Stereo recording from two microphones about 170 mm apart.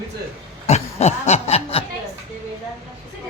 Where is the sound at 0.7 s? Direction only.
40° left (ahead or behind).